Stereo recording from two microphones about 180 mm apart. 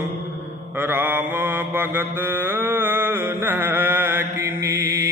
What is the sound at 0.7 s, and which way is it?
Mantra, 10° right (ahead or behind).